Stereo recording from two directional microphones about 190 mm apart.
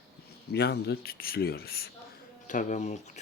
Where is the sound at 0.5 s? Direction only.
60° left (ahead or behind).